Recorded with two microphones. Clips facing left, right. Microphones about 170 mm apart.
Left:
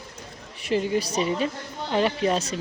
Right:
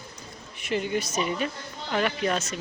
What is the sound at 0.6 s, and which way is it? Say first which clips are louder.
A woman's voice: left 4 dB; 30° left (ahead or behind).